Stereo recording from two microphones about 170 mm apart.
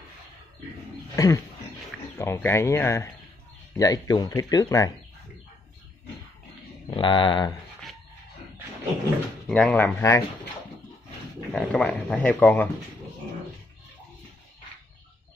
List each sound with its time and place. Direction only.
1.1 s speech: 20° left (ahead or behind)
6.9 s speech: 30° left (ahead or behind)
9.5 s speech: 5° left (ahead or behind)
11.5 s speech: 5° left (ahead or behind)